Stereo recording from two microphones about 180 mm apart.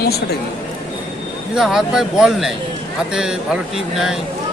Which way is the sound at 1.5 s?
5° right (ahead or behind).